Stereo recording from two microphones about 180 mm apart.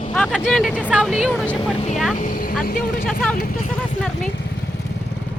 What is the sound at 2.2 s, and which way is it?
Speech, 55° left (ahead or behind).